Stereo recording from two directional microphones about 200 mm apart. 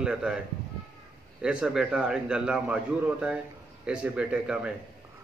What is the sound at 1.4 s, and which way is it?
A man's voice, 5° right (ahead or behind).